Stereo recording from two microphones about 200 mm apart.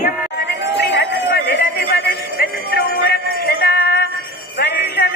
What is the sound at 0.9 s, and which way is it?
Music, 55° left (ahead or behind).